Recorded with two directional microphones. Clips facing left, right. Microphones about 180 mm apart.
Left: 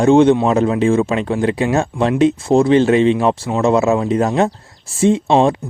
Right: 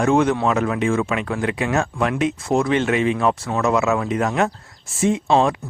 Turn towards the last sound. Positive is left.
turn(degrees=30)  # may be behind; listen again after turning